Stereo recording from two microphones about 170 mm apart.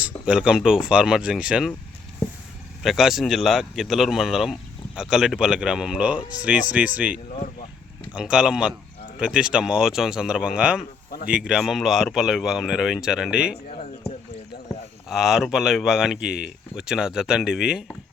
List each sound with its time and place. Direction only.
0.0 s speech: 5° right (ahead or behind)
2.8 s speech: centre (ahead or behind)
13.7 s a sound: 35° left (ahead or behind)
15.1 s speech: 5° right (ahead or behind)